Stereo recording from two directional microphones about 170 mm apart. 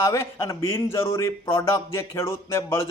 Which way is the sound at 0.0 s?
15° left (ahead or behind).